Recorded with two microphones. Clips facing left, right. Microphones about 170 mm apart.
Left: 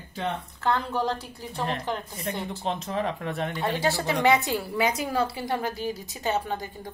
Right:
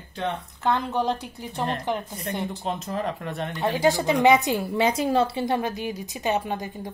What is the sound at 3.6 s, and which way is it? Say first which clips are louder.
A woman's voice: right 6 dB; 15° right (ahead or behind).